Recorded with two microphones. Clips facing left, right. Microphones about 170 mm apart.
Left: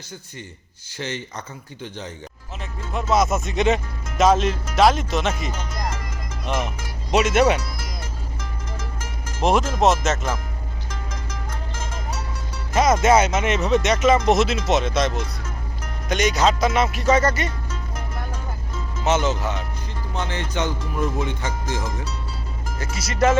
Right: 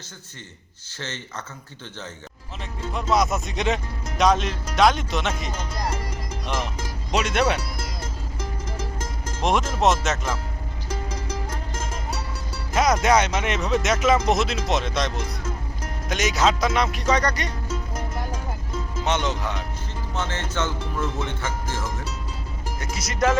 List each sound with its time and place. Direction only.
0.9 s speech: 15° left (ahead or behind)
2.9 s speech: centre (ahead or behind)
9.4 s speech: centre (ahead or behind)
12.7 s speech: centre (ahead or behind)
19.0 s speech: 5° left (ahead or behind)
20.1 s speech: 15° left (ahead or behind)
22.8 s speech: centre (ahead or behind)